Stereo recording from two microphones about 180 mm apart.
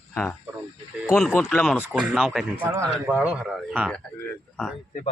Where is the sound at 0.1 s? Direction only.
5° left (ahead or behind).